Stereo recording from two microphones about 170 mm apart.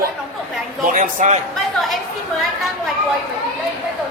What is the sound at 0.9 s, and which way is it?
Speech, 50° right (ahead or behind).